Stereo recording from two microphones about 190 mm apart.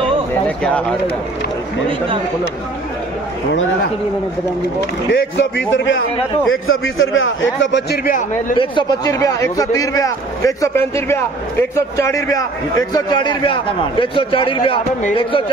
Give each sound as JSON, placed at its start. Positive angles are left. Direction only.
{"t": 5.1, "sound": "a man's voice", "side_deg": 75}
{"t": 6.5, "sound": "a man's voice", "side_deg": 90}
{"t": 8.5, "sound": "a man's voice", "side_deg": 25}